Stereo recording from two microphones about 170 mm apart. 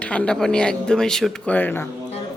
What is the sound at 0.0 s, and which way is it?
Speech, 5° left (ahead or behind).